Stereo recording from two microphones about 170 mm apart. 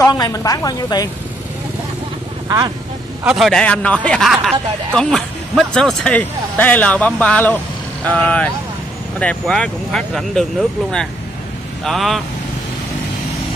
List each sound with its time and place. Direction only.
0.0 s a woman's voice: 20° left (ahead or behind)
2.4 s speech: 20° right (ahead or behind)
3.3 s speech: centre (ahead or behind)
11.8 s speech: centre (ahead or behind)